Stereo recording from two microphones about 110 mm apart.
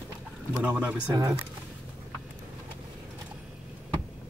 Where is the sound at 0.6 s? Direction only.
10° right (ahead or behind).